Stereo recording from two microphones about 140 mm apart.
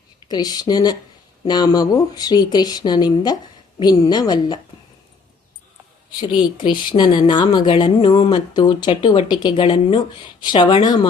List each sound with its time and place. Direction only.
0.3 s speech: 30° left (ahead or behind)
6.1 s speech: 30° left (ahead or behind)